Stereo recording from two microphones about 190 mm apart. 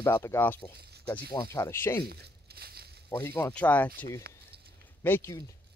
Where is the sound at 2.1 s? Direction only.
55° right (ahead or behind).